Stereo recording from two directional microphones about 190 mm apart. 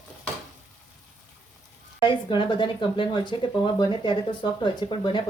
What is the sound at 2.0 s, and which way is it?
Speech, 25° left (ahead or behind).